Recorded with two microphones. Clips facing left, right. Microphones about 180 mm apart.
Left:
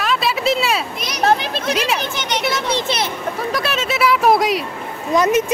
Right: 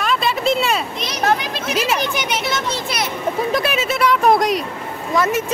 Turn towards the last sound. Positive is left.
turn(degrees=20)  # may be behind; listen again after turning